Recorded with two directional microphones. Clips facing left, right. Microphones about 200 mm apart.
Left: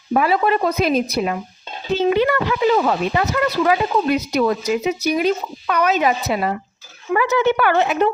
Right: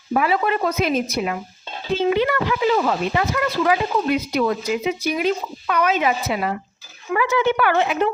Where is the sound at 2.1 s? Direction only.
45° left (ahead or behind).